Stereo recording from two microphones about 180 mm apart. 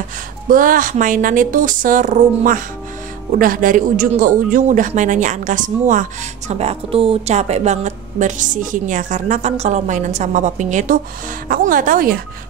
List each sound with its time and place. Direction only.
0.5 s speech: 50° right (ahead or behind)